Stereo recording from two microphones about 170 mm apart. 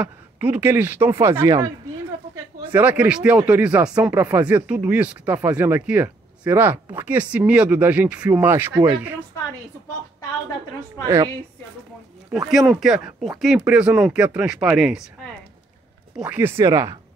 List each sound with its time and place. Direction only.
0.0 s speech: 10° right (ahead or behind)
2.7 s speech: 10° right (ahead or behind)
12.3 s speech: centre (ahead or behind)
16.2 s speech: 10° right (ahead or behind)